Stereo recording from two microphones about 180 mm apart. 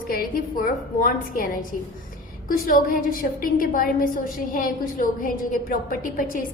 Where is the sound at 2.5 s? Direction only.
50° left (ahead or behind).